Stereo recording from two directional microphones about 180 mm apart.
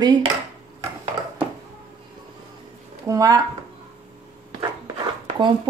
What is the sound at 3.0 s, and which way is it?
Speech, 20° right (ahead or behind).